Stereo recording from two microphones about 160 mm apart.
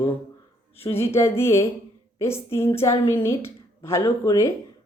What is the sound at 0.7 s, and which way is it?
Speech, 40° left (ahead or behind).